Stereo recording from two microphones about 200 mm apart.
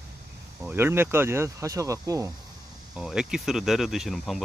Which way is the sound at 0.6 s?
10° right (ahead or behind).